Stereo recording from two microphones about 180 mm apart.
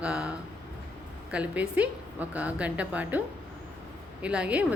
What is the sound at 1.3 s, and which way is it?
A woman's voice, 10° right (ahead or behind).